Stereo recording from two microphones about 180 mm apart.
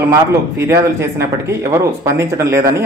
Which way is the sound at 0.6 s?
15° right (ahead or behind).